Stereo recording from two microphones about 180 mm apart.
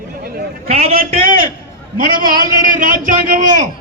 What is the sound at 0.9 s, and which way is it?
Speech, 50° right (ahead or behind).